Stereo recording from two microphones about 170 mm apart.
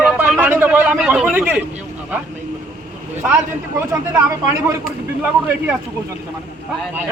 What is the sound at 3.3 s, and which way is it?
Speech, 15° right (ahead or behind).